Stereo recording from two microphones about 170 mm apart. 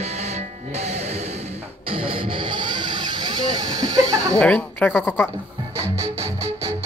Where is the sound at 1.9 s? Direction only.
30° right (ahead or behind).